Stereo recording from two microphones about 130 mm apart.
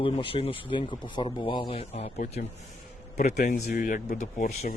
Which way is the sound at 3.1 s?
70° left (ahead or behind).